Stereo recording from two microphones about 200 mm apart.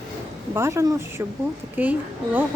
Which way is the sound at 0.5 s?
15° right (ahead or behind).